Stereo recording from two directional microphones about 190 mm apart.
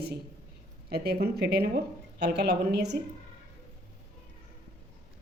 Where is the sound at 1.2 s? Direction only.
55° right (ahead or behind).